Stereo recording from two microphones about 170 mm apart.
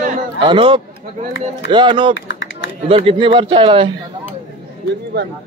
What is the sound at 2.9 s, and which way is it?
A man's voice, 35° right (ahead or behind).